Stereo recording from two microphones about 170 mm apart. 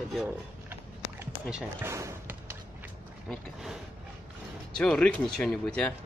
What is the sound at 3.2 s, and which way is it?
Speech, centre (ahead or behind).